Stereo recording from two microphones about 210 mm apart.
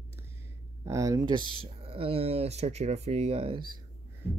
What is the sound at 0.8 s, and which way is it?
Speech, 15° right (ahead or behind).